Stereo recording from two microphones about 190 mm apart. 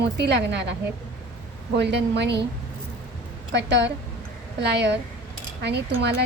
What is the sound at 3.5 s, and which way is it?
A woman's voice, 65° right (ahead or behind).